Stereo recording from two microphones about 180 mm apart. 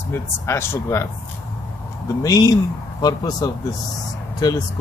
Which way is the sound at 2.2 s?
20° left (ahead or behind).